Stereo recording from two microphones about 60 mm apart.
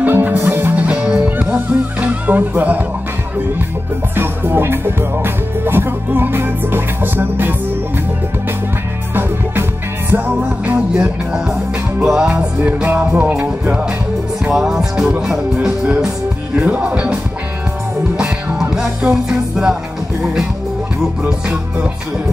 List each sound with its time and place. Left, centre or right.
0.0 s music: right
0.7 s music: centre
4.1 s music: right
10.1 s music: right
11.0 s music: centre
12.6 s music: right
14.5 s music: centre
16.5 s music: right